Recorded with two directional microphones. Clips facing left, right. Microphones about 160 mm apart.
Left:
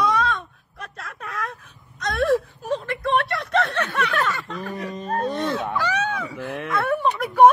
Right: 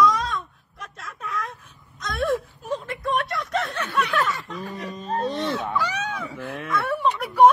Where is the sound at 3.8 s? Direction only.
55° left (ahead or behind).